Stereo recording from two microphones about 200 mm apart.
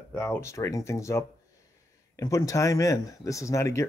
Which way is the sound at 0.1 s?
15° left (ahead or behind).